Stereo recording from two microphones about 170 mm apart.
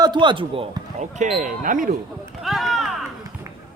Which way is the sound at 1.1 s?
50° right (ahead or behind).